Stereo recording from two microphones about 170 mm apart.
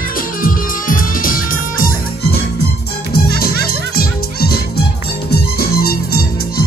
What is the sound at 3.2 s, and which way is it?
Music, 65° left (ahead or behind).